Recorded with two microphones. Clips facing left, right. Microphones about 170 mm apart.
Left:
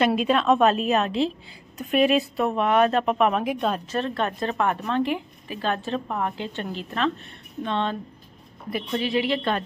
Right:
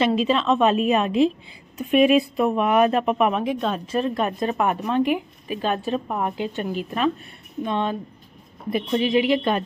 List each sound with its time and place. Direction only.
0.3 s a woman's voice: 5° left (ahead or behind)
3.8 s speech: 10° right (ahead or behind)